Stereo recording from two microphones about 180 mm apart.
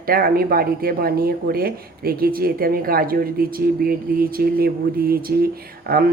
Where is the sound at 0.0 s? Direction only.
55° right (ahead or behind).